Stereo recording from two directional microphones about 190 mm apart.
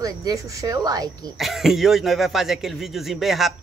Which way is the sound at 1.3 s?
Centre (ahead or behind).